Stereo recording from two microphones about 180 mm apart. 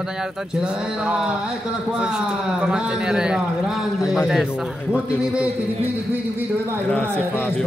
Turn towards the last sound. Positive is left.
turn(degrees=10)  # may be behind; listen again after turning